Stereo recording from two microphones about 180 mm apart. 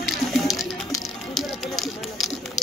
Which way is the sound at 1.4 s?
Centre (ahead or behind).